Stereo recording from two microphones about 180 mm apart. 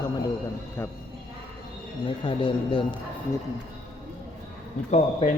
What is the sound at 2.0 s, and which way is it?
Speech, 30° left (ahead or behind).